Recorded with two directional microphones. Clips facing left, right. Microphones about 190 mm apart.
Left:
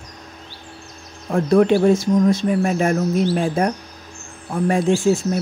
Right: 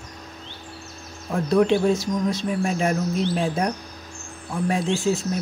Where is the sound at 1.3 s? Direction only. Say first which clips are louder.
Left 4 dB; 50° left (ahead or behind).